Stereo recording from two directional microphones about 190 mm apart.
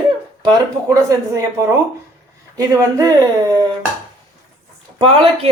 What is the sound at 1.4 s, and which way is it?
Speech, 15° right (ahead or behind).